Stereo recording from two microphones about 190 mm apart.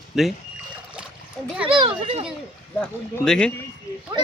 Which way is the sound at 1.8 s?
25° right (ahead or behind).